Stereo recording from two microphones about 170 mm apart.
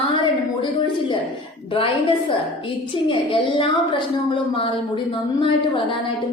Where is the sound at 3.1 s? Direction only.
30° left (ahead or behind).